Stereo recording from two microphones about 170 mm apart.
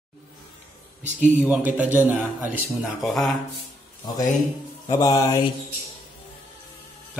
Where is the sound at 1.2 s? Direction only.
10° right (ahead or behind).